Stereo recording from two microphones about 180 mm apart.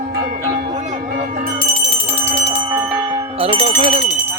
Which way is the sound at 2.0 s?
30° right (ahead or behind).